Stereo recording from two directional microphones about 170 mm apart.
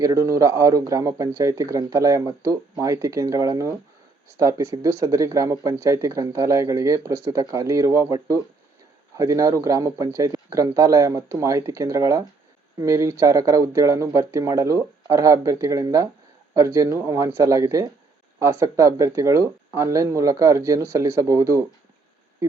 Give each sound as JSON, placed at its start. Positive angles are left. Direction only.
{"t": 0.0, "sound": "speech", "side_deg": -20}